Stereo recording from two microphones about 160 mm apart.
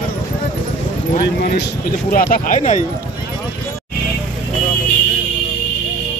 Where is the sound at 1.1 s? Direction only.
70° left (ahead or behind); by 2.8 s 50° left (ahead or behind).